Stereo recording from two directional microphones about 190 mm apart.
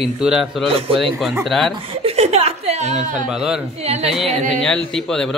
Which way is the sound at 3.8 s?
35° right (ahead or behind).